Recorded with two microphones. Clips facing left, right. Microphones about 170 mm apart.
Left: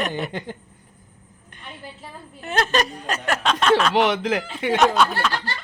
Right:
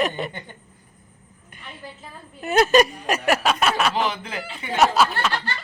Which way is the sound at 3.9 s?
75° left (ahead or behind).